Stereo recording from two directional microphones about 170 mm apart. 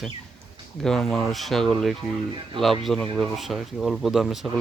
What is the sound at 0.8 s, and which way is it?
Speech, 5° left (ahead or behind).